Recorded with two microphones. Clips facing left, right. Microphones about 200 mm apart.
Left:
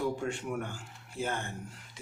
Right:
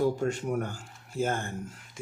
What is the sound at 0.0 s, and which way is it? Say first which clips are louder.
Speech: right 6 dB; 40° right (ahead or behind).